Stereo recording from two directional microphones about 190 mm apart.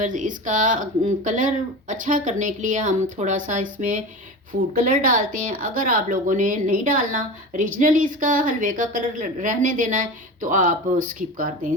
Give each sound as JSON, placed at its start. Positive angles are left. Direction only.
{"t": 0.0, "sound": "speech", "side_deg": -45}